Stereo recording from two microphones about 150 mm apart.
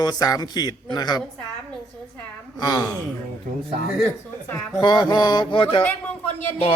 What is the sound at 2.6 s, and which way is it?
Speech, 25° left (ahead or behind).